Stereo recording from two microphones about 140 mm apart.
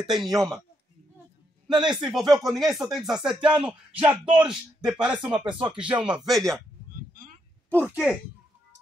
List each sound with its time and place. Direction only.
0.0 s speech: centre (ahead or behind)
1.8 s a man's voice: 5° right (ahead or behind)
5.1 s speech: 35° right (ahead or behind)
5.7 s a man's voice: 5° right (ahead or behind)
5.9 s speech: 35° right (ahead or behind)
6.2 s speech: centre (ahead or behind)
7.8 s speech: 5° right (ahead or behind)